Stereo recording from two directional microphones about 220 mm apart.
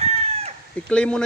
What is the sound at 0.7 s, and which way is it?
Speech, 5° left (ahead or behind).